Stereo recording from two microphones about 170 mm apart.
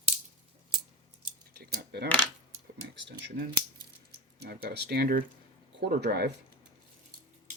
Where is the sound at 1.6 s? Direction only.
70° right (ahead or behind).